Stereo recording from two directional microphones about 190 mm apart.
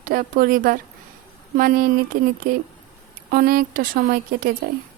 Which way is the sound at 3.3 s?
45° right (ahead or behind).